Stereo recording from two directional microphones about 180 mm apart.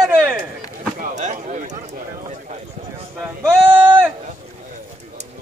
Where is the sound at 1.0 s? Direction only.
40° right (ahead or behind).